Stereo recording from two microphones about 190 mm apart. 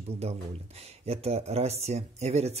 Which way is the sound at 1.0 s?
30° right (ahead or behind).